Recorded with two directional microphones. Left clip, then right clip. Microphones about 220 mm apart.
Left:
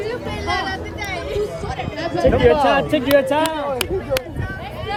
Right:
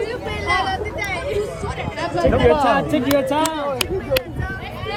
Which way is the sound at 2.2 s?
45° left (ahead or behind).